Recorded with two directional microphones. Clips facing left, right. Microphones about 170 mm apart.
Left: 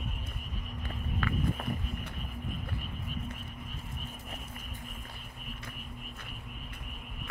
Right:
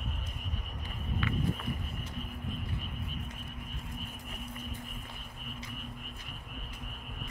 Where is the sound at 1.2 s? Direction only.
45° left (ahead or behind).